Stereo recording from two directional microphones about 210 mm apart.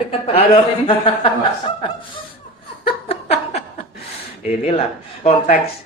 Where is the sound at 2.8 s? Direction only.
25° left (ahead or behind).